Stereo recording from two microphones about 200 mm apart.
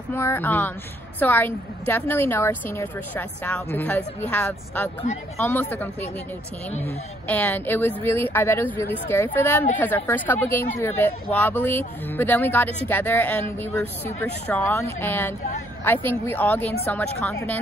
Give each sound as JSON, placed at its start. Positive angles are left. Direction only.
{"t": 0.1, "sound": "speech", "side_deg": 10}
{"t": 7.2, "sound": "speech", "side_deg": 10}